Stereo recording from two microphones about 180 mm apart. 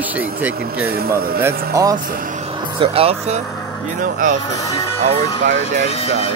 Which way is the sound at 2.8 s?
35° right (ahead or behind).